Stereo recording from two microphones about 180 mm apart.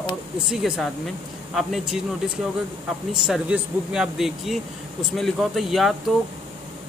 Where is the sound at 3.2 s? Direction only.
5° right (ahead or behind).